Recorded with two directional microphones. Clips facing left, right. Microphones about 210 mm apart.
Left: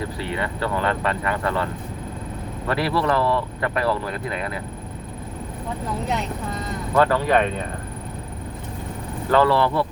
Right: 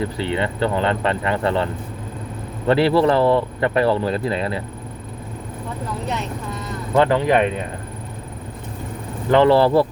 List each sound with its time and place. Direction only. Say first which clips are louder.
0.2 s speech: right 5 dB; 25° right (ahead or behind)
6.9 s speech: right 2 dB; 20° right (ahead or behind)
9.3 s speech: right 4 dB; 20° right (ahead or behind)
9.6 s speech: right 6 dB; 35° right (ahead or behind)